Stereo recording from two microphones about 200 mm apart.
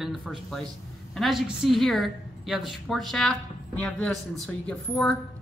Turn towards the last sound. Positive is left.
turn(degrees=5)  # may be behind; listen again after turning